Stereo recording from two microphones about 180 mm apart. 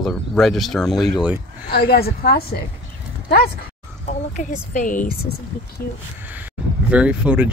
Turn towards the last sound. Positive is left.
turn(degrees=-5)  # may be behind; listen again after turning